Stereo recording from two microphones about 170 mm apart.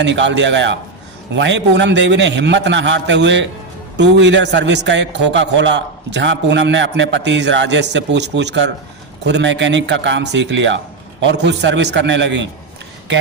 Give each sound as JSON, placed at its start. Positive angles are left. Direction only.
{"t": 0.0, "sound": "a man's voice", "side_deg": -90}